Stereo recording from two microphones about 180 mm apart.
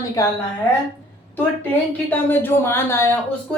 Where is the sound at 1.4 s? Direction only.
10° left (ahead or behind).